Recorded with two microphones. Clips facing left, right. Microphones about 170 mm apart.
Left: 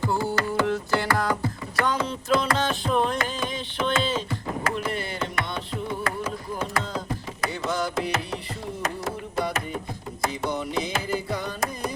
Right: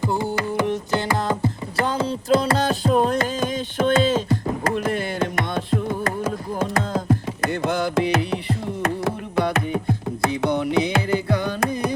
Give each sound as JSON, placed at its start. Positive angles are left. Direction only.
{"t": 0.0, "sound": "music", "side_deg": -20}
{"t": 7.4, "sound": "carnatic music", "side_deg": -55}